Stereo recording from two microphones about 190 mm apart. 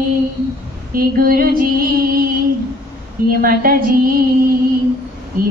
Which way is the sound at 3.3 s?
50° right (ahead or behind).